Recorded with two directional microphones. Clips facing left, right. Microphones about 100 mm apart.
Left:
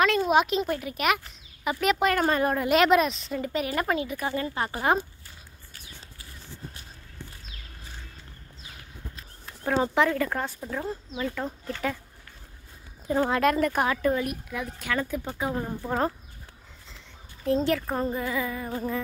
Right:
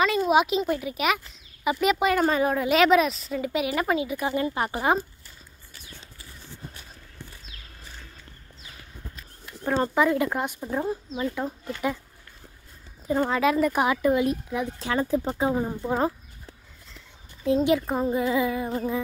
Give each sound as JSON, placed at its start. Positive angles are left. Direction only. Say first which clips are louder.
{"t": 0.0, "sound": "a child's voice", "louder": "right 1 dB", "side_deg": -5}
{"t": 9.7, "sound": "a child's voice", "louder": "right 1 dB", "side_deg": -5}
{"t": 10.1, "sound": "speech", "louder": "right 3 dB", "side_deg": -15}
{"t": 13.1, "sound": "a child's voice", "louder": "right 1 dB", "side_deg": 0}
{"t": 14.2, "sound": "speech", "louder": "right 6 dB", "side_deg": -25}
{"t": 15.5, "sound": "speech", "louder": "right 3 dB", "side_deg": -15}
{"t": 17.5, "sound": "speech", "louder": "right 3 dB", "side_deg": -15}